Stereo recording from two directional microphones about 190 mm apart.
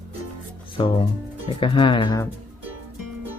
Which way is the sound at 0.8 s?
25° left (ahead or behind).